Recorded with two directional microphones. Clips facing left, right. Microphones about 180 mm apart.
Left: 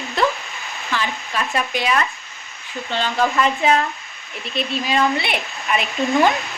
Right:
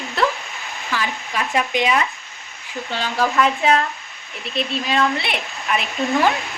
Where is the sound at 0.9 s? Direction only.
10° right (ahead or behind).